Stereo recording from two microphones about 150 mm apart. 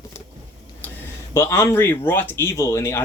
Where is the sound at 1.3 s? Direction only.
20° left (ahead or behind).